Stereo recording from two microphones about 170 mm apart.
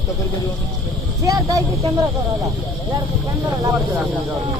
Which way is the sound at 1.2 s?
20° right (ahead or behind).